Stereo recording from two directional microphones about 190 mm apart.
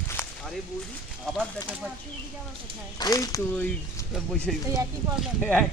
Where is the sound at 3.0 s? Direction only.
20° left (ahead or behind).